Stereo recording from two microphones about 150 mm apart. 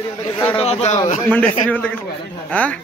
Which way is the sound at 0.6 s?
45° left (ahead or behind).